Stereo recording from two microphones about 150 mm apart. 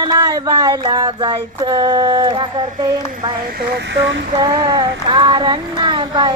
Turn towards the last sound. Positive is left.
turn(degrees=-30)  # may be behind; listen again after turning